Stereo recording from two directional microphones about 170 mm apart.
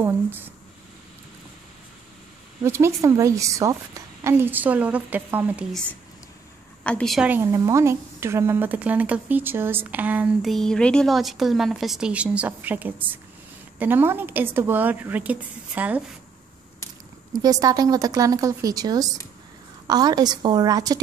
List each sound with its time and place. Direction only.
2.6 s a woman's voice: 15° right (ahead or behind)
6.8 s a woman's voice: 5° left (ahead or behind)
7.2 s a woman's voice: 15° right (ahead or behind)
17.3 s speech: 20° right (ahead or behind)